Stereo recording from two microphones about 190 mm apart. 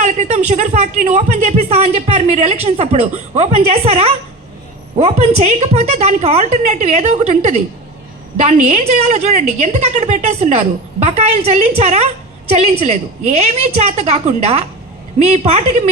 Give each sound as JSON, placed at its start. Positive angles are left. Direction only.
{"t": 0.0, "sound": "speech", "side_deg": -40}